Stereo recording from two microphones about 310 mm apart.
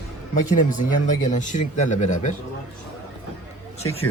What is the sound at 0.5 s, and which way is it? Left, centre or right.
Speech, left.